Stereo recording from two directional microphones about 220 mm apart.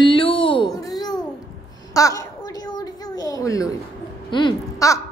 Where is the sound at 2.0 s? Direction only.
15° left (ahead or behind).